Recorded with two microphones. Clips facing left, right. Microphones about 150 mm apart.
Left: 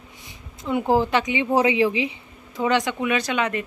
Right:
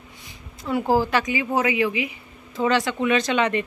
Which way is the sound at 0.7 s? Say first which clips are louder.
Left 1 dB; 20° left (ahead or behind).